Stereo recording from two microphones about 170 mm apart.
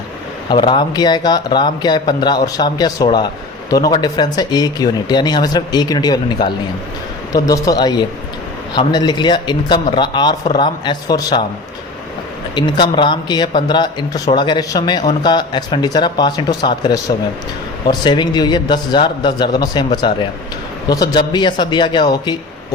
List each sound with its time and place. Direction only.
0.5 s speech: 30° left (ahead or behind)
12.5 s speech: 25° left (ahead or behind)